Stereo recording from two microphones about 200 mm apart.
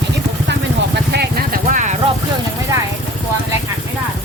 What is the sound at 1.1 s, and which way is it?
Vehicle, 50° right (ahead or behind).